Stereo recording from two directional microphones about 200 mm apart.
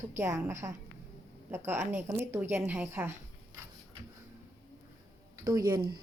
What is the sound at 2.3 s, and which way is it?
Speech, 15° right (ahead or behind).